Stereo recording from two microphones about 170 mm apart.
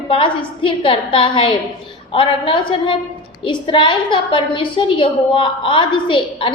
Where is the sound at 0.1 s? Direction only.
30° left (ahead or behind).